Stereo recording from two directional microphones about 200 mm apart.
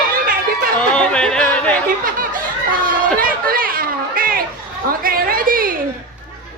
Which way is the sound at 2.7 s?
45° right (ahead or behind).